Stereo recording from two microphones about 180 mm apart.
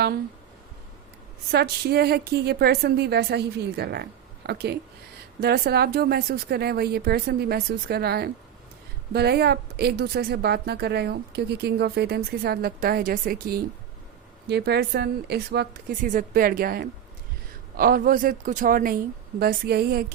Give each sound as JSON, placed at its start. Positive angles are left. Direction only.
{"t": 1.5, "sound": "a woman's voice", "side_deg": -60}
{"t": 14.4, "sound": "a woman's voice", "side_deg": -65}
{"t": 19.4, "sound": "a woman's voice", "side_deg": -60}